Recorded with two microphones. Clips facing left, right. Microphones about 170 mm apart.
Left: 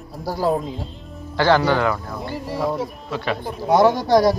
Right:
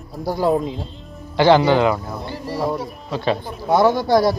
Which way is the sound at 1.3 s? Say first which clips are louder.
Right 4 dB; 20° right (ahead or behind).